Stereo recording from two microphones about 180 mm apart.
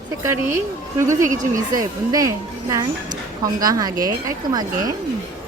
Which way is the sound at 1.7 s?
20° right (ahead or behind).